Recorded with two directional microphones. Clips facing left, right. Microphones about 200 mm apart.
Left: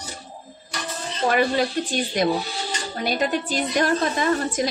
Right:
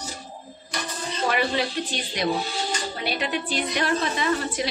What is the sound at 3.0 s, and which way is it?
A woman's voice, 45° left (ahead or behind).